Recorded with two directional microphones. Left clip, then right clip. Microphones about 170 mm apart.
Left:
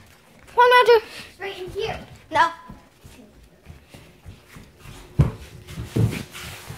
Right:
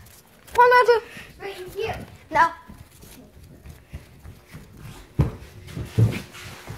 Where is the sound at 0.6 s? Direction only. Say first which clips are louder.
Left 1 dB; 20° left (ahead or behind).